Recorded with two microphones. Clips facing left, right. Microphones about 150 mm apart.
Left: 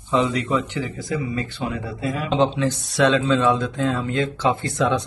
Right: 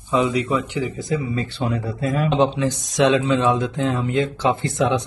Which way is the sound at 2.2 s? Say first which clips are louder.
Even; 15° right (ahead or behind).